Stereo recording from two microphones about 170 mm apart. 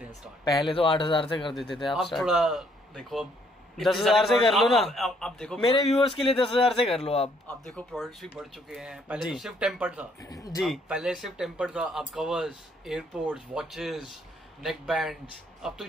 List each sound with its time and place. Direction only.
0.5 s speech: 25° left (ahead or behind)
1.5 s speech: centre (ahead or behind)
7.0 s a man's voice: 35° left (ahead or behind)
7.4 s speech: 5° left (ahead or behind)